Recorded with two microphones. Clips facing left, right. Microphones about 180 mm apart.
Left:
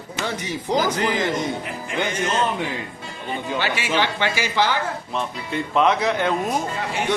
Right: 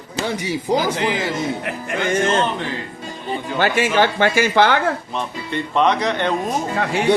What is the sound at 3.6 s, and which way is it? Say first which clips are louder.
Speech: right 8 dB; 50° right (ahead or behind).